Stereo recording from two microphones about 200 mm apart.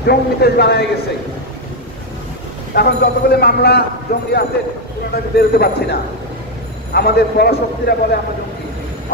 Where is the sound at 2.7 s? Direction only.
50° left (ahead or behind).